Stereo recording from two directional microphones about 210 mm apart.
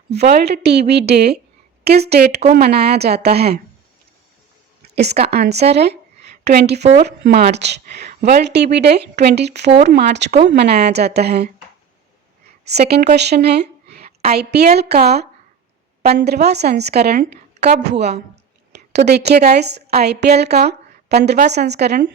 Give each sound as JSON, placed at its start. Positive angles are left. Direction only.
{"t": 0.1, "sound": "a woman's voice", "side_deg": -50}
{"t": 4.8, "sound": "a sound", "side_deg": -50}
{"t": 5.3, "sound": "a woman's voice", "side_deg": -50}
{"t": 12.8, "sound": "a woman's voice", "side_deg": -45}